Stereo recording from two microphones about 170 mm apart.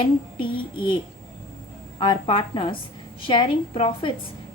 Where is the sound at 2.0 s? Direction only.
30° left (ahead or behind).